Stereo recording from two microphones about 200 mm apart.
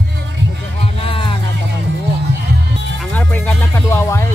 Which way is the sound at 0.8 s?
25° left (ahead or behind).